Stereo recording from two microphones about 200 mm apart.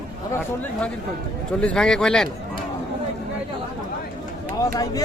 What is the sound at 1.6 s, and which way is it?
Speech, 5° left (ahead or behind).